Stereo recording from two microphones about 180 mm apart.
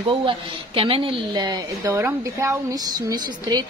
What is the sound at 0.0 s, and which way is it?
A woman's voice, 30° right (ahead or behind).